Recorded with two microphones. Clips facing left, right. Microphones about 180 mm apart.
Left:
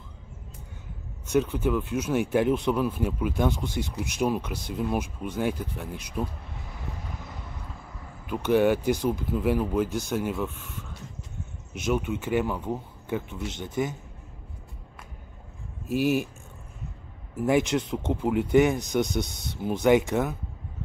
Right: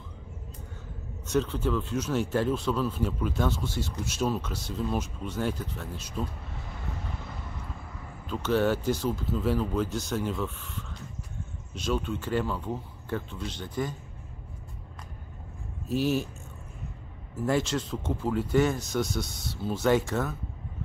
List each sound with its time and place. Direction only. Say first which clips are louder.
1.3 s speech: left 3 dB; 15° left (ahead or behind)
8.3 s speech: left 4 dB; 15° left (ahead or behind)
15.9 s speech: left 2 dB; 10° left (ahead or behind)
17.4 s speech: left 4 dB; 15° left (ahead or behind)